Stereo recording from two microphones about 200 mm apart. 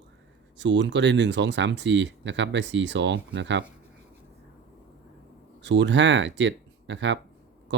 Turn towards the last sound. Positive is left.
turn(degrees=-65)  # may be behind; listen again after turning